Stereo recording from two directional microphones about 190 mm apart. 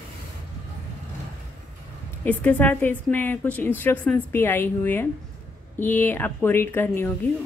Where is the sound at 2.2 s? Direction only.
10° left (ahead or behind).